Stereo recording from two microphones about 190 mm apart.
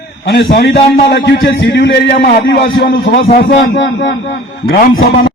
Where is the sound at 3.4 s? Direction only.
65° left (ahead or behind).